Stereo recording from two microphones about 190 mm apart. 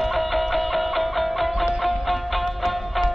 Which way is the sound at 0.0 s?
Centre (ahead or behind).